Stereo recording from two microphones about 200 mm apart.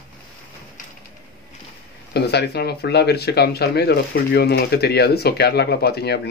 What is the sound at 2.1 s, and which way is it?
Speech, 55° left (ahead or behind).